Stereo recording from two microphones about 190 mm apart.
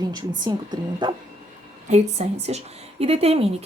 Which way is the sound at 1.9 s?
35° right (ahead or behind).